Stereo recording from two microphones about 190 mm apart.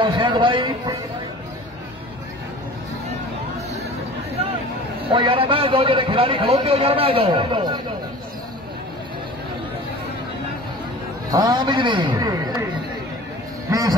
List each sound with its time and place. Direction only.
0.0 s a man's voice: 25° right (ahead or behind)
5.1 s a man's voice: 25° right (ahead or behind)
11.2 s a man's voice: 20° right (ahead or behind)
13.7 s music: 20° right (ahead or behind)